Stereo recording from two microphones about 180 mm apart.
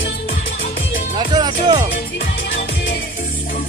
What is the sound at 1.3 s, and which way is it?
Music, 25° right (ahead or behind).